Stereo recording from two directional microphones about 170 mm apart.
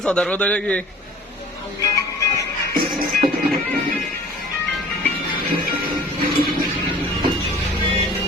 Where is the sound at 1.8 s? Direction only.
20° left (ahead or behind).